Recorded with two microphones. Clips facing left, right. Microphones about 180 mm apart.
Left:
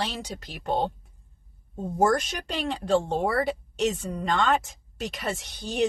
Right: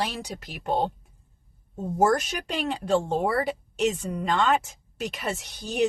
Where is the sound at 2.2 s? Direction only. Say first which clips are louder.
Right 1 dB; 35° left (ahead or behind).